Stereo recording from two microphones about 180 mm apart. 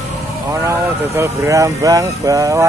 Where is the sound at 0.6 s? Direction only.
15° right (ahead or behind).